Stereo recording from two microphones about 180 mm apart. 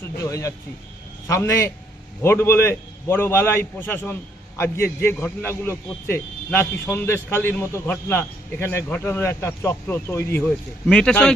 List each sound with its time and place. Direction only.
0.2 s a man's voice: 15° left (ahead or behind)